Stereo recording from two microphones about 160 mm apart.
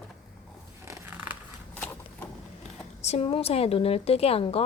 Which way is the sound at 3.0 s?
40° left (ahead or behind).